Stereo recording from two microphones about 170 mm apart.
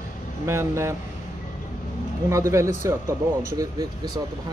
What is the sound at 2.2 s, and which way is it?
Speech, 15° right (ahead or behind).